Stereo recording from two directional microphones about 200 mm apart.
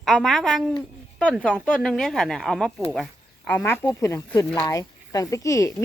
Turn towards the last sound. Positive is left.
turn(degrees=15)  # may be behind; listen again after turning